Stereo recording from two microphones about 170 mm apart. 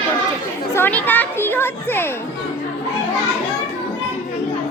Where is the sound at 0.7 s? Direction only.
10° left (ahead or behind).